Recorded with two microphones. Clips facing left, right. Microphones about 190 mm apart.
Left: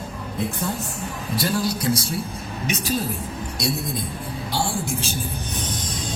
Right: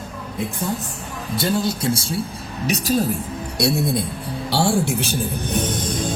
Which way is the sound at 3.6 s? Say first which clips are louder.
Right 7 dB; 70° right (ahead or behind).